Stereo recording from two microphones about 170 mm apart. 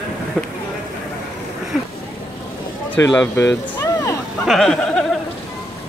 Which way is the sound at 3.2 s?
10° left (ahead or behind).